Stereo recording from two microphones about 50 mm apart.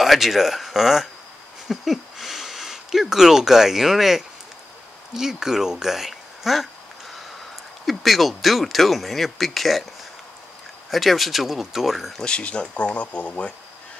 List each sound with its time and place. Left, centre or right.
0.0 s speech: centre
7.8 s speech: centre
10.9 s speech: centre
12.2 s speech: left